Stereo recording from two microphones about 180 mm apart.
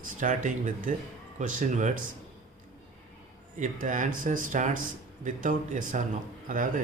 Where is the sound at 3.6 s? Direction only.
45° right (ahead or behind).